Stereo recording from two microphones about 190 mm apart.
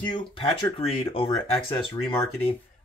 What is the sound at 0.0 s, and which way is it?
Speech, 25° left (ahead or behind).